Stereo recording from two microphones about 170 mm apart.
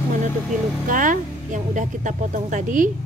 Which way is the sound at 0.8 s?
50° right (ahead or behind).